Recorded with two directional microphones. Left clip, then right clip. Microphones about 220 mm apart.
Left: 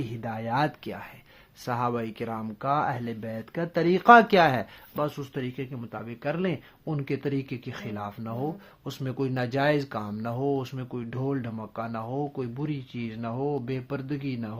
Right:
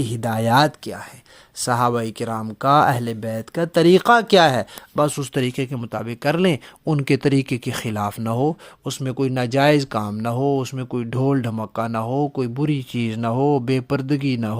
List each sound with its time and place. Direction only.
0.0 s speech: 40° right (ahead or behind)